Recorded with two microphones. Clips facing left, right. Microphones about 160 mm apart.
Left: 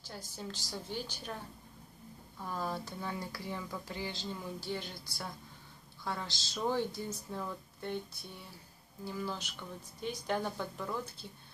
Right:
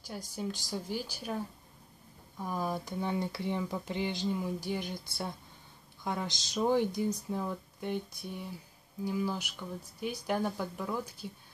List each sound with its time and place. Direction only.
0.0 s speech: 15° right (ahead or behind)
2.3 s speech: 15° right (ahead or behind)
6.0 s speech: 15° right (ahead or behind)